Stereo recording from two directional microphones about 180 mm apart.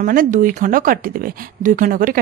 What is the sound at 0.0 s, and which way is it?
Speech, 50° right (ahead or behind).